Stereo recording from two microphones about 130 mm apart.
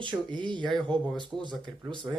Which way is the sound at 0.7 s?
5° left (ahead or behind).